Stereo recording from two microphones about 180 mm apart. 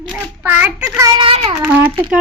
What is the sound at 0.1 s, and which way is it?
A child's voice, 10° right (ahead or behind).